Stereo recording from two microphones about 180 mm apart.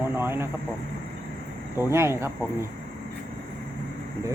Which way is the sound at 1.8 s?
15° right (ahead or behind).